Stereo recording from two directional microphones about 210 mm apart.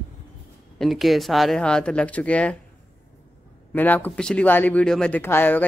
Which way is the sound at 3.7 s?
10° left (ahead or behind).